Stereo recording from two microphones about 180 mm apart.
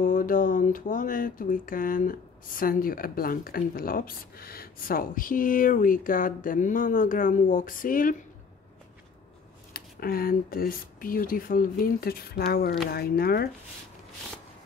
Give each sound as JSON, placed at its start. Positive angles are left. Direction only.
{"t": 0.0, "sound": "speech", "side_deg": 50}
{"t": 9.8, "sound": "speech", "side_deg": 55}